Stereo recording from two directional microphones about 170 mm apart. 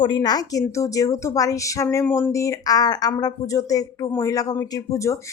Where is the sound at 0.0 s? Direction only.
25° left (ahead or behind).